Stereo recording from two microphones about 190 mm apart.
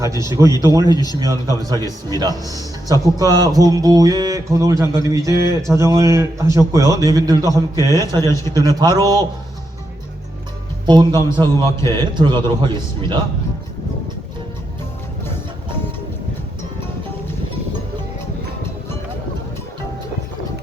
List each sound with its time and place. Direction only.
0.0 s a man's voice: 15° right (ahead or behind)
0.9 s speech: 20° left (ahead or behind)
1.6 s music: 20° right (ahead or behind)
4.9 s a man's voice: 15° right (ahead or behind)
7.9 s a man's voice: 15° left (ahead or behind)
8.6 s music: 20° right (ahead or behind)
10.8 s music: 20° right (ahead or behind)
11.6 s a man's voice: 15° left (ahead or behind)
11.9 s music: 25° right (ahead or behind)